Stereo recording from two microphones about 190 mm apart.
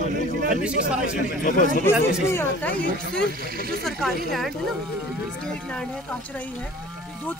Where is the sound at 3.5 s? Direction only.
50° right (ahead or behind).